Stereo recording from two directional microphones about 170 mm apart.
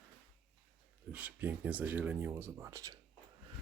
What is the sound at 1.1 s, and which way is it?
Speech, 10° right (ahead or behind).